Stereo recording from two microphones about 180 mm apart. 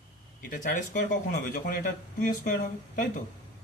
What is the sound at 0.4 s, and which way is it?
Speech, 50° left (ahead or behind).